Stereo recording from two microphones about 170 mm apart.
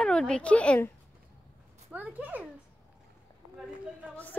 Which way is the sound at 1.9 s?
5° right (ahead or behind).